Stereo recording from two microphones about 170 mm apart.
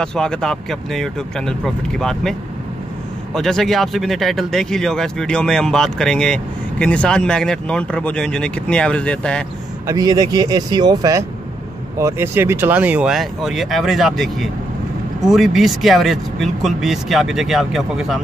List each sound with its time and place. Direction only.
0.0 s speech: 5° left (ahead or behind)
3.3 s speech: 5° left (ahead or behind)
9.8 s speech: 20° right (ahead or behind); by 18.2 s centre (ahead or behind)